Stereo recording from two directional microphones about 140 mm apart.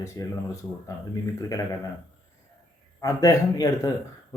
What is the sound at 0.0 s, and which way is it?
Speech, 20° left (ahead or behind).